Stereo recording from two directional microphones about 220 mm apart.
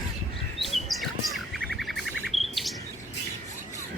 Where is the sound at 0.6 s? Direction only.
Centre (ahead or behind).